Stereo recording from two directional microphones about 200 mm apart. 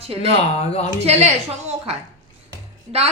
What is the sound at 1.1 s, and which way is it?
Speech, 30° right (ahead or behind).